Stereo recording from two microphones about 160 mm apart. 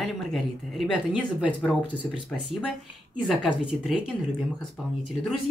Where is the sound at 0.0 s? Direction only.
Centre (ahead or behind).